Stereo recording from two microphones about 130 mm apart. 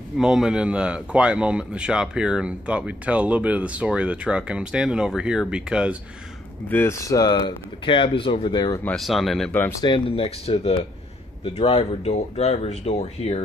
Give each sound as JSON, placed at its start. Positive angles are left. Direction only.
{"t": 0.2, "sound": "a man's voice", "side_deg": -5}
{"t": 6.7, "sound": "speech", "side_deg": 20}
{"t": 8.8, "sound": "speech", "side_deg": 0}
{"t": 9.8, "sound": "speech", "side_deg": 40}